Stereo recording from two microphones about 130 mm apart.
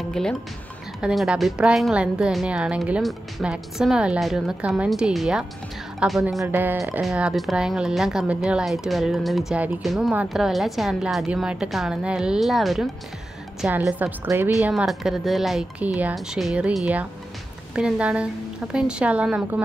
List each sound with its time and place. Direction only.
0.1 s a woman's voice: 5° left (ahead or behind)
6.4 s a woman's voice: 15° right (ahead or behind)
13.7 s a woman's voice: 15° right (ahead or behind)
14.7 s a woman's voice: 5° right (ahead or behind)
15.8 s a woman's voice: 10° right (ahead or behind)